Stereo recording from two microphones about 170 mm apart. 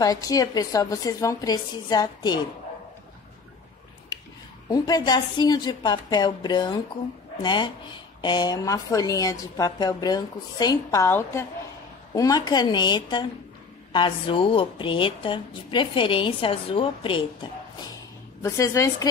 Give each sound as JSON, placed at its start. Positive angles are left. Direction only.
{"t": 0.0, "sound": "a woman's voice", "side_deg": 20}
{"t": 4.6, "sound": "a woman's voice", "side_deg": 20}